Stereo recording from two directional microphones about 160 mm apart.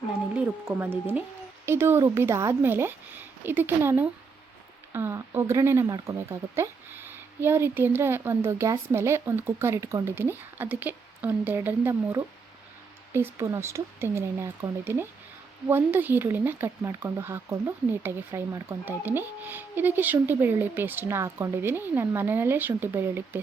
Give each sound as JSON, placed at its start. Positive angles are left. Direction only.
{"t": 0.3, "sound": "speech", "side_deg": -15}